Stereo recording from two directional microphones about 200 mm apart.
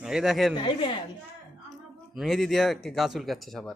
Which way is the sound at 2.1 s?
Centre (ahead or behind).